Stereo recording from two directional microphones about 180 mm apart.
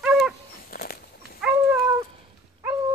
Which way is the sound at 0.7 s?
55° left (ahead or behind).